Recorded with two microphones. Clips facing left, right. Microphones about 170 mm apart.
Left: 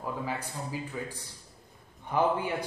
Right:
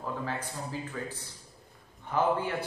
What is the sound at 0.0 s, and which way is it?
A man's voice, 10° left (ahead or behind).